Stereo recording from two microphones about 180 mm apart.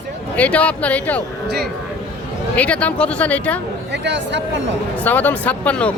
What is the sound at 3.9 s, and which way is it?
Speech, 75° right (ahead or behind).